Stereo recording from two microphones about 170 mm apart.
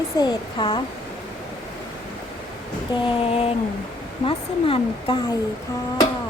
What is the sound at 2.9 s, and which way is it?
Speech, 30° left (ahead or behind).